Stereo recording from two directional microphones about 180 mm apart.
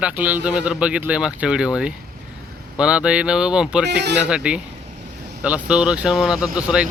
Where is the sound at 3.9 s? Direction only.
70° right (ahead or behind).